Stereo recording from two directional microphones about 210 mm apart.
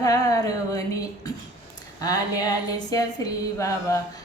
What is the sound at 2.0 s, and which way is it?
A woman's voice, 15° left (ahead or behind).